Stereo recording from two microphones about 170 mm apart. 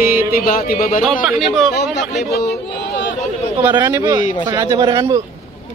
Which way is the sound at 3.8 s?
15° right (ahead or behind).